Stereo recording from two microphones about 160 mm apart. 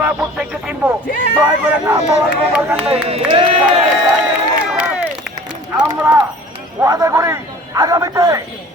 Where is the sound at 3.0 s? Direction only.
35° right (ahead or behind).